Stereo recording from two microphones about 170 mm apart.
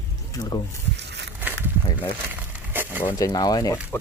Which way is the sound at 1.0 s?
90° right.